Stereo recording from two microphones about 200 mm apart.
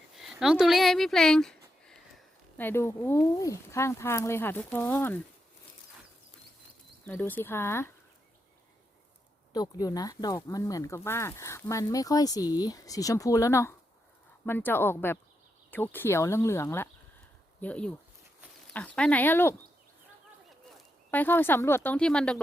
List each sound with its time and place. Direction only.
0.2 s speech: centre (ahead or behind)
7.1 s speech: 10° left (ahead or behind)
9.5 s speech: 20° left (ahead or behind)
21.1 s speech: 10° left (ahead or behind)